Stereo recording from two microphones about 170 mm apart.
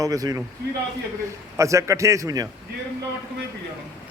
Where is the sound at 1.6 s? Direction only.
20° right (ahead or behind).